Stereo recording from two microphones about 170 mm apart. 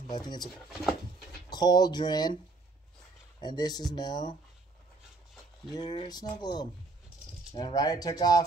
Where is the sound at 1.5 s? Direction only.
25° left (ahead or behind).